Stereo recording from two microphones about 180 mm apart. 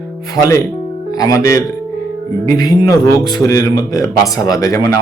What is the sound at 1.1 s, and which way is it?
A man's voice, 20° left (ahead or behind).